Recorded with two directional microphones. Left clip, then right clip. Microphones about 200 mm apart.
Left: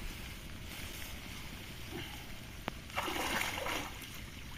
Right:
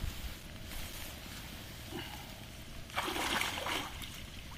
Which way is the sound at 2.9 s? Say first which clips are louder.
Right 2 dB; 20° left (ahead or behind).